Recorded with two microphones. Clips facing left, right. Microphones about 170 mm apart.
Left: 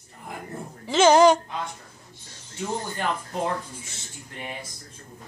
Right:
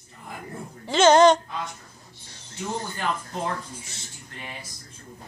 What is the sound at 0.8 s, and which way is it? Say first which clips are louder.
Speech: even; 5° left (ahead or behind).